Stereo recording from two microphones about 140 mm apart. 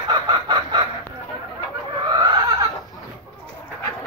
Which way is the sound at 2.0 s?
30° right (ahead or behind).